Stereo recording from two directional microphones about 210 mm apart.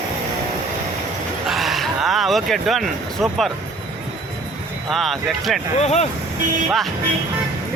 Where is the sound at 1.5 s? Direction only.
Centre (ahead or behind).